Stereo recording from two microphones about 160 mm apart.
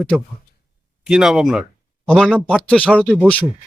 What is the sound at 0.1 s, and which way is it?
Speech, 5° right (ahead or behind).